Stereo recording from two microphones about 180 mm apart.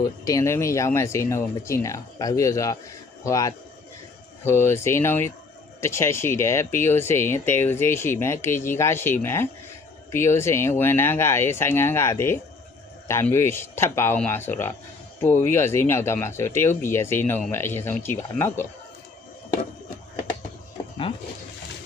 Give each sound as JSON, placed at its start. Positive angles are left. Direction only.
{"t": 0.0, "sound": "speech", "side_deg": 20}